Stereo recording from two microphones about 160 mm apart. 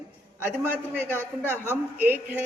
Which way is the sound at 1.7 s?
10° right (ahead or behind).